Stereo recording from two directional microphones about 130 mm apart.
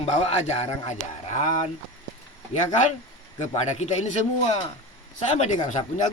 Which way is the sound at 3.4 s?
60° left (ahead or behind).